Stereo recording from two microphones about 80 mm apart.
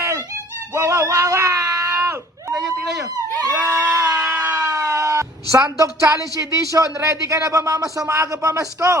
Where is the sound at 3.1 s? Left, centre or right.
Right.